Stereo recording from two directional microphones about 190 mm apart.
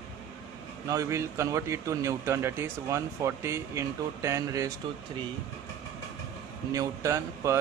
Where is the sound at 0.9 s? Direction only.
15° right (ahead or behind).